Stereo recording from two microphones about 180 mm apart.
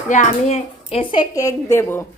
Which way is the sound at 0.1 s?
40° left (ahead or behind).